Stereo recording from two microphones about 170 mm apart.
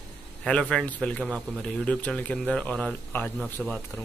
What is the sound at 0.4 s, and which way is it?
A man's voice, 5° left (ahead or behind).